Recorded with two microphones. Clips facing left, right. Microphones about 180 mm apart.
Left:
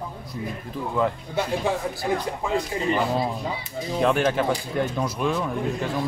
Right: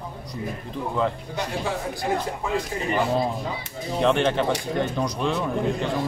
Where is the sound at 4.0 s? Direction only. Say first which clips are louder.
Even; 5° left (ahead or behind).